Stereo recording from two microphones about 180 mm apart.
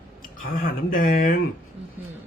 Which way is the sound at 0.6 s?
55° left (ahead or behind).